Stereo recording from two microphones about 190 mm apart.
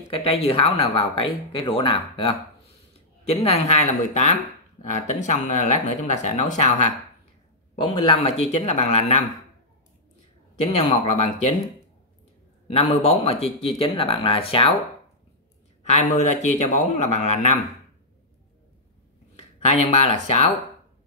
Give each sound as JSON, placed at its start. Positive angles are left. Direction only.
{"t": 0.1, "sound": "a man's voice", "side_deg": 30}
{"t": 7.7, "sound": "a man's voice", "side_deg": 25}
{"t": 10.6, "sound": "a man's voice", "side_deg": 30}
{"t": 12.7, "sound": "speech", "side_deg": 30}
{"t": 15.8, "sound": "a man's voice", "side_deg": 40}
{"t": 19.3, "sound": "speech", "side_deg": 35}